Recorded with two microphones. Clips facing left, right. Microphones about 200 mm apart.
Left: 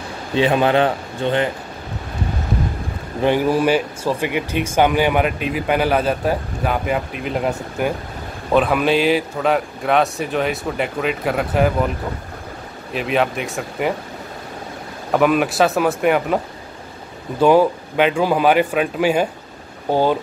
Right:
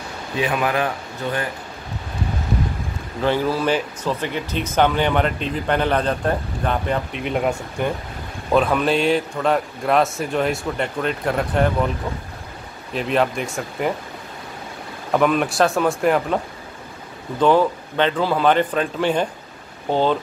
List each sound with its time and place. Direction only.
0.4 s a man's voice: 30° left (ahead or behind)
3.2 s speech: 15° left (ahead or behind)
12.9 s speech: centre (ahead or behind)
15.1 s speech: 5° left (ahead or behind)
17.4 s speech: 10° left (ahead or behind)